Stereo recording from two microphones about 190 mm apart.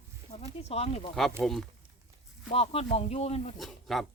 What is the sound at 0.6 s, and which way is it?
Speech, 30° left (ahead or behind).